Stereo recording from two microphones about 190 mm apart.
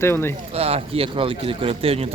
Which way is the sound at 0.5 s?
30° right (ahead or behind).